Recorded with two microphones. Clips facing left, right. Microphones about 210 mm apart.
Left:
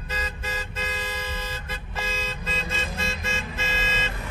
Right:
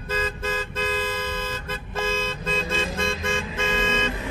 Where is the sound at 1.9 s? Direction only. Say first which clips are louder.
Right 6 dB; 50° right (ahead or behind).